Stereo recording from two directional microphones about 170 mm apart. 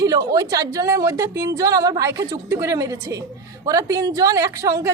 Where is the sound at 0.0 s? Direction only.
20° right (ahead or behind).